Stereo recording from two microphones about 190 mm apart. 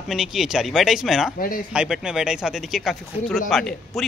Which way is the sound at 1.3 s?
50° left (ahead or behind).